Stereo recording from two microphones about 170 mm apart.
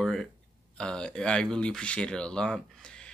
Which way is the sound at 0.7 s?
5° left (ahead or behind).